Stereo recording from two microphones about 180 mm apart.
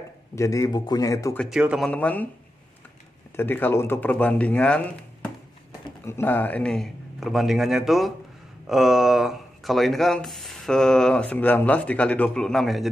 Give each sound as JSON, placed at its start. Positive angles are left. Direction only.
{"t": 0.4, "sound": "speech", "side_deg": 20}
{"t": 1.4, "sound": "speech", "side_deg": -5}
{"t": 1.9, "sound": "speech", "side_deg": 10}
{"t": 3.3, "sound": "speech", "side_deg": 10}